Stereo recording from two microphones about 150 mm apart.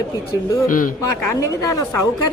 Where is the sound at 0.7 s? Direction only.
65° left (ahead or behind).